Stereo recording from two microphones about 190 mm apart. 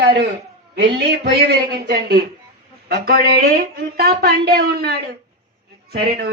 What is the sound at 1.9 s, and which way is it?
A woman's voice, 60° right (ahead or behind).